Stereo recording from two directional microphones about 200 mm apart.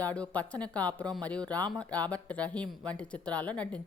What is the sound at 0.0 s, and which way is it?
A woman's voice, 5° left (ahead or behind).